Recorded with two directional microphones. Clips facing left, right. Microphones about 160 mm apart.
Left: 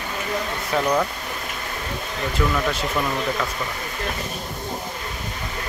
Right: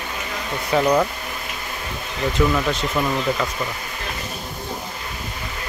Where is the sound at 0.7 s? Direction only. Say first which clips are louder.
Right 4 dB; 10° right (ahead or behind).